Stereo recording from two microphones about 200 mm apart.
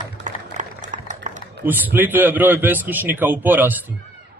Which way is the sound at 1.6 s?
10° right (ahead or behind).